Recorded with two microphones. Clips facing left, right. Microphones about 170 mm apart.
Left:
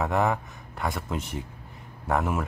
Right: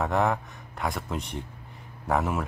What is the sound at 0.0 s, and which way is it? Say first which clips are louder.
Speech: even; centre (ahead or behind).